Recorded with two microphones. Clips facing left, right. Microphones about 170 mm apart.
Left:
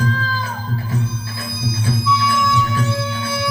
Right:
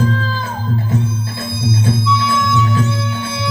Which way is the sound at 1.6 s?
25° right (ahead or behind).